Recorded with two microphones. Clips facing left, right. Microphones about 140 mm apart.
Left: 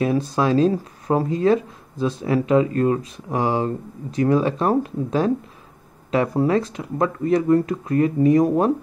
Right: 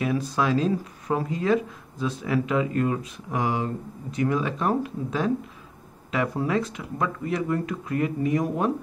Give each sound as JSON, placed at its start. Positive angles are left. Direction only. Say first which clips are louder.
{"t": 0.0, "sound": "speech", "louder": "left 5 dB", "side_deg": 30}